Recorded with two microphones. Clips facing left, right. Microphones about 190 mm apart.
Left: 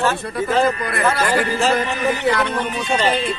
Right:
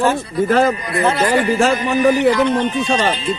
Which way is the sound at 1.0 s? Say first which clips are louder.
Right 3 dB; 20° right (ahead or behind).